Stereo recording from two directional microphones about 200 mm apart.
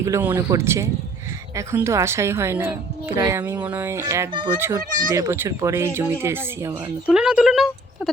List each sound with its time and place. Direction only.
0.0 s speech: 15° right (ahead or behind)